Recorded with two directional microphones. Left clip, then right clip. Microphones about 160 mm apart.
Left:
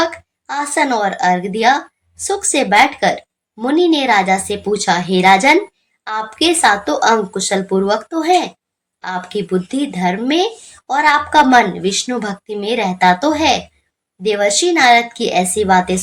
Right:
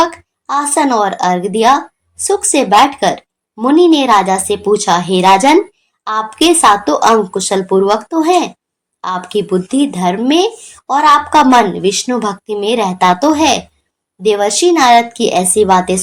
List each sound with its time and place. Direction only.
0.0 s a woman's voice: 15° right (ahead or behind)